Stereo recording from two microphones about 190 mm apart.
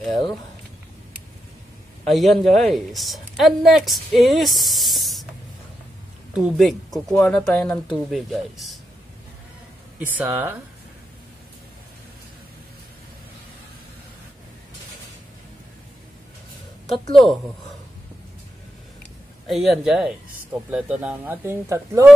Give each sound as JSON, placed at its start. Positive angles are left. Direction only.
{"t": 2.0, "sound": "speech", "side_deg": 0}
{"t": 6.3, "sound": "speech", "side_deg": -5}
{"t": 7.2, "sound": "speech", "side_deg": 15}
{"t": 9.9, "sound": "speech", "side_deg": -10}
{"t": 16.9, "sound": "speech", "side_deg": 0}
{"t": 19.4, "sound": "speech", "side_deg": 0}